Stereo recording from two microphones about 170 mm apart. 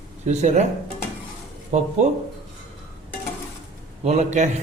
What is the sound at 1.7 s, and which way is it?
Speech, 45° right (ahead or behind).